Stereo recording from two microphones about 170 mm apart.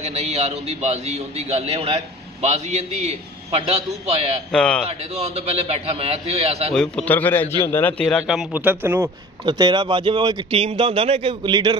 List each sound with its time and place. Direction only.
0.0 s a man's voice: 40° right (ahead or behind)
4.5 s a man's voice: 5° left (ahead or behind)
4.8 s a man's voice: 40° right (ahead or behind)
6.7 s a man's voice: 5° left (ahead or behind); by 9.1 s 15° right (ahead or behind)
9.4 s a man's voice: 25° right (ahead or behind)